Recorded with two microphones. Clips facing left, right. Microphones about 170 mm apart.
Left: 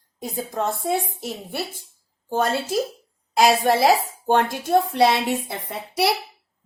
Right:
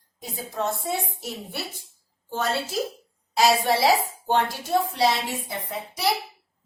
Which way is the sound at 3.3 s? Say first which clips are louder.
Left 3 dB; 50° left (ahead or behind).